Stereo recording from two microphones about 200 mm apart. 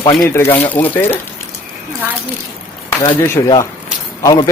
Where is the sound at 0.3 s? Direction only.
10° left (ahead or behind).